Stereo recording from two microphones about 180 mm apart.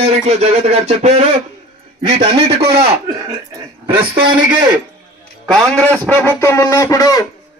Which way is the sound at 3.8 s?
25° right (ahead or behind).